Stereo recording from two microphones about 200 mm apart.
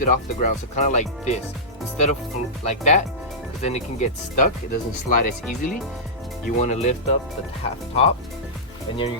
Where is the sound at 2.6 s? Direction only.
35° left (ahead or behind).